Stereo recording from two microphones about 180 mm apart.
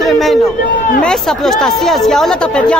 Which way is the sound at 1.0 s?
Centre (ahead or behind).